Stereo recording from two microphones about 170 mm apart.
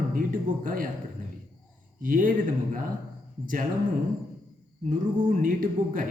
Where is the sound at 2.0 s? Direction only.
55° right (ahead or behind).